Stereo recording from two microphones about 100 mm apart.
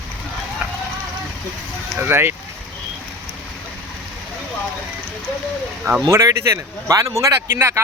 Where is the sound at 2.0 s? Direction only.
20° right (ahead or behind).